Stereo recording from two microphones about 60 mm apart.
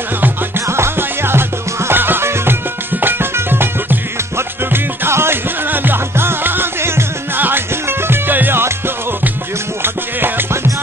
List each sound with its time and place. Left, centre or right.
0.2 s music: right